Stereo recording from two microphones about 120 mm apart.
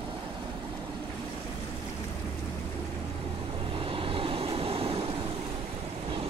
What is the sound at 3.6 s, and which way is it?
Vehicle, 45° right (ahead or behind).